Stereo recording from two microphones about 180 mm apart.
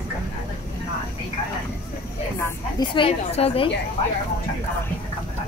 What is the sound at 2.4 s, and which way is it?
A woman's voice, 25° left (ahead or behind).